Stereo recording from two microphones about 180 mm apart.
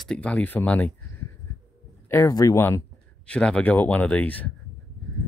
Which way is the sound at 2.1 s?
15° left (ahead or behind).